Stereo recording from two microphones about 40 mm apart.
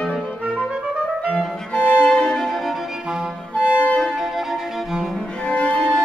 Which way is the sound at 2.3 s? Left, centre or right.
Centre.